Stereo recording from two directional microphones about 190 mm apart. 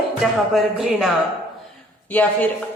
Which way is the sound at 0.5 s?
Centre (ahead or behind).